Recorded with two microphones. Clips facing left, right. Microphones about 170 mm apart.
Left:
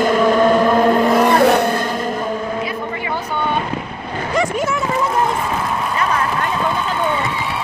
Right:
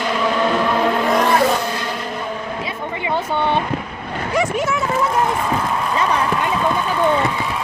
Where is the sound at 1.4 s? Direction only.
65° left (ahead or behind).